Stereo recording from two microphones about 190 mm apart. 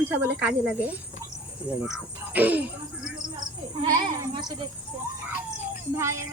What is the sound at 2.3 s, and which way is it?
Speech, 10° right (ahead or behind).